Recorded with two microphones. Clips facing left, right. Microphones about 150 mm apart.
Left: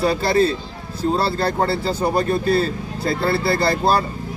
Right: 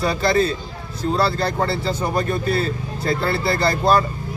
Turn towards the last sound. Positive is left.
turn(degrees=30)  # may be behind; listen again after turning